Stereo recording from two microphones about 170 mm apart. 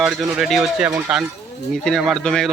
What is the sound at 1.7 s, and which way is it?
Speech, centre (ahead or behind).